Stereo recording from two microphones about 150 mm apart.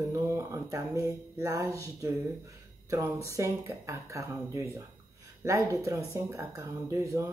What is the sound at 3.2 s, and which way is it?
Speech, 20° right (ahead or behind).